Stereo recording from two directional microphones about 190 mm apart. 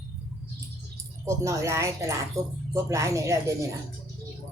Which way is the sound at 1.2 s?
15° right (ahead or behind).